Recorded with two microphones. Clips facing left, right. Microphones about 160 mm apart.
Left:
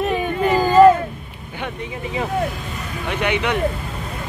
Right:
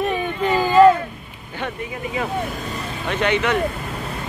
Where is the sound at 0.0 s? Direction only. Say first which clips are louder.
Left 2 dB; 10° left (ahead or behind).